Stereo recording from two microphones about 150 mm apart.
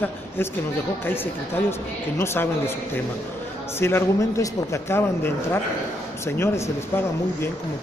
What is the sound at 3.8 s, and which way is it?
Speech, 20° left (ahead or behind).